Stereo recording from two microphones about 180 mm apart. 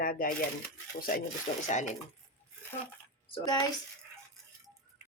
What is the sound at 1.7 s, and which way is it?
Speech, 45° left (ahead or behind).